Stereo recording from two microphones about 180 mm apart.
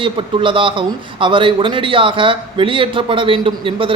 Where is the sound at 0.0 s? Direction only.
30° right (ahead or behind).